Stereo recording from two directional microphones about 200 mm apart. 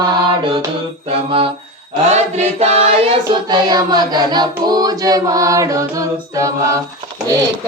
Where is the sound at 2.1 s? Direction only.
30° right (ahead or behind).